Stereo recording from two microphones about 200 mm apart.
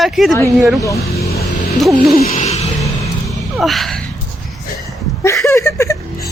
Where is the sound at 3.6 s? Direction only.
Centre (ahead or behind).